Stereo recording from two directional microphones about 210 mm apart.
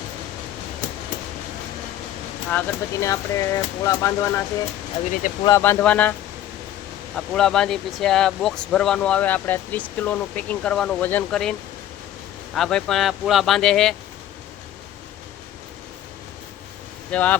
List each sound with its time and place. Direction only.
2.5 s speech: 10° left (ahead or behind)
5.0 s speech: 35° left (ahead or behind)
5.5 s speech: 10° left (ahead or behind)
7.2 s speech: 5° left (ahead or behind)
12.5 s speech: centre (ahead or behind)
17.1 s speech: 5° left (ahead or behind)